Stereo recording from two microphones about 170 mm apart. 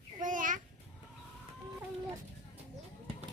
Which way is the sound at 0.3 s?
50° right (ahead or behind).